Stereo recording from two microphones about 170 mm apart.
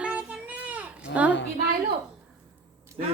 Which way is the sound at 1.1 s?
90° left.